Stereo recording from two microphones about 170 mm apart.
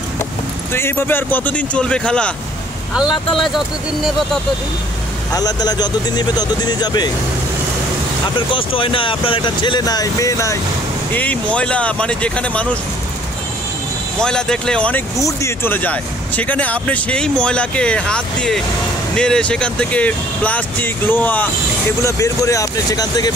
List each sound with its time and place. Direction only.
0.7 s speech: 15° left (ahead or behind)
5.3 s speech: 20° left (ahead or behind)
8.4 s speech: 30° left (ahead or behind)
11.1 s speech: 10° left (ahead or behind)
14.2 s speech: 5° left (ahead or behind); by 23.3 s 20° left (ahead or behind)